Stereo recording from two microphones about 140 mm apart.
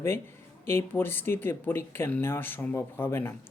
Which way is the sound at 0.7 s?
15° left (ahead or behind).